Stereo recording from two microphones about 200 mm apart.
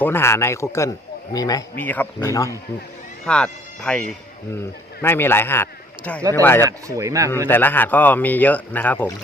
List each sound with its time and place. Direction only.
0.0 s speech: 10° left (ahead or behind)
3.2 s speech: 5° left (ahead or behind)
5.0 s speech: 10° left (ahead or behind)
6.6 s speech: 15° right (ahead or behind)
7.4 s speech: 10° left (ahead or behind)